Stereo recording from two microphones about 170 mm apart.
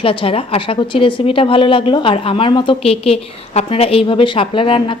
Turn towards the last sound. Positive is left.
turn(degrees=30)  # may be behind; listen again after turning